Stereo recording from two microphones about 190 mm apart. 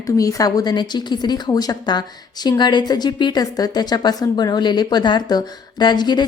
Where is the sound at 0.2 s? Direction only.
20° left (ahead or behind).